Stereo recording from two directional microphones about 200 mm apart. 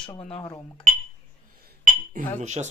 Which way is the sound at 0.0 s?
30° left (ahead or behind).